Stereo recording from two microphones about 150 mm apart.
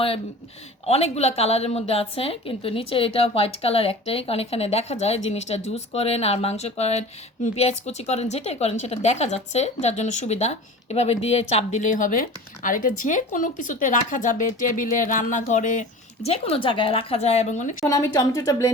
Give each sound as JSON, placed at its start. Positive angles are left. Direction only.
{"t": 0.9, "sound": "speech", "side_deg": 45}
{"t": 17.8, "sound": "a woman's voice", "side_deg": 20}